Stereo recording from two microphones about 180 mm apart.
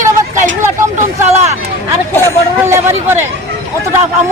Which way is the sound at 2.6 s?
15° right (ahead or behind).